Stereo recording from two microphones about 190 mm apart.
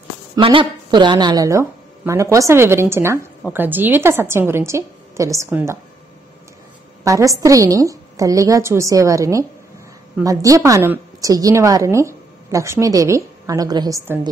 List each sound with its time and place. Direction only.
0.4 s a woman's voice: 25° right (ahead or behind)
7.1 s a woman's voice: 15° right (ahead or behind)